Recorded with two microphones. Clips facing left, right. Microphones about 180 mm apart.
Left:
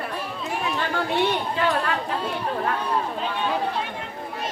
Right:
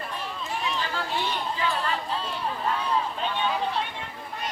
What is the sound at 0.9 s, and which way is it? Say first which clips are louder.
Chatter: left 7 dB; 65° left (ahead or behind).